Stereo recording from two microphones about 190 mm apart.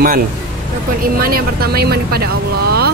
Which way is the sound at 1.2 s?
50° right (ahead or behind).